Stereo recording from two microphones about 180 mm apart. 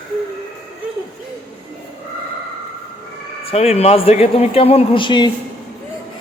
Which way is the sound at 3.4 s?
35° left (ahead or behind).